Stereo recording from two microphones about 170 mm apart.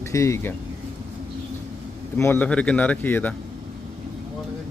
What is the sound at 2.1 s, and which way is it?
Speech, 10° left (ahead or behind).